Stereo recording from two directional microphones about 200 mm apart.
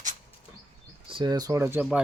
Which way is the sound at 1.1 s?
25° right (ahead or behind).